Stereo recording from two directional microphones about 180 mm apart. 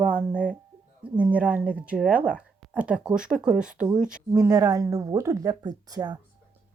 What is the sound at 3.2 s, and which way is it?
Speech, 5° right (ahead or behind).